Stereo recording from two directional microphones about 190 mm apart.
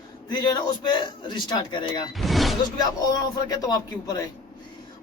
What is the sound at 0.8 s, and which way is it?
Speech, 25° left (ahead or behind).